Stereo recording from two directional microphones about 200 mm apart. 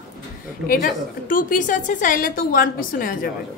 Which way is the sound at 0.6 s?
45° left (ahead or behind).